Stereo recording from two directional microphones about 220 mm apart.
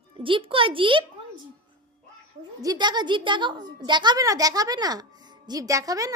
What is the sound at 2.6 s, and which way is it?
A woman's voice, 20° right (ahead or behind).